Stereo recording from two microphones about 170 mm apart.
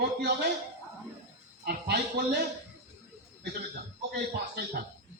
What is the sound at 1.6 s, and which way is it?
Speech, 70° right (ahead or behind).